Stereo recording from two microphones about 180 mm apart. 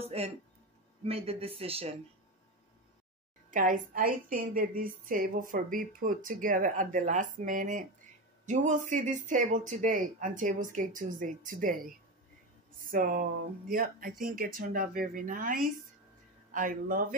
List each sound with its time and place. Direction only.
0.2 s speech: 35° right (ahead or behind)
3.4 s a woman's voice: 45° right (ahead or behind)
12.9 s a woman's voice: 50° right (ahead or behind)